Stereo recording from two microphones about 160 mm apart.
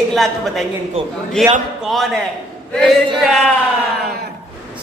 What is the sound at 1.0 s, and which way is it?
Speech, 35° right (ahead or behind).